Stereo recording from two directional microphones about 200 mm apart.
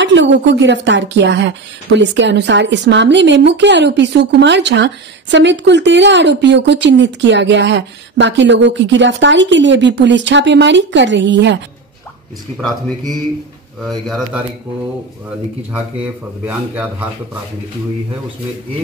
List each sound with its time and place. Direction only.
0.0 s a woman's voice: 65° right (ahead or behind)
12.5 s speech: centre (ahead or behind)
16.4 s a man's voice: 5° right (ahead or behind)